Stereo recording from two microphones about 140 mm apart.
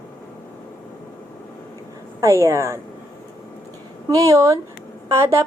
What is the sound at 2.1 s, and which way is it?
Speech, 20° right (ahead or behind).